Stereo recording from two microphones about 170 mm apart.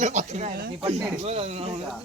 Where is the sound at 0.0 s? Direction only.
45° right (ahead or behind).